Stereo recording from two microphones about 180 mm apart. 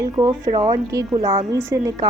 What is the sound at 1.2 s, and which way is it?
Speech, 30° right (ahead or behind).